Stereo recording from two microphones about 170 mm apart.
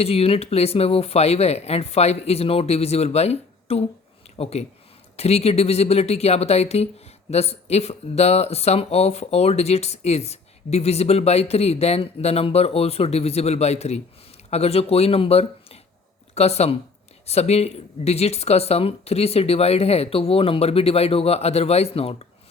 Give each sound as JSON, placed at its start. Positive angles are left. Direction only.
{"t": 0.0, "sound": "speech", "side_deg": 35}